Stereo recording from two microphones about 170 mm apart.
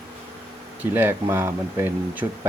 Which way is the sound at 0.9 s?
15° right (ahead or behind).